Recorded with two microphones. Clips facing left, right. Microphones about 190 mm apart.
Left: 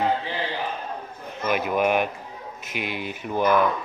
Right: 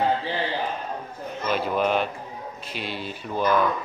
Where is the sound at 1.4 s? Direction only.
15° left (ahead or behind).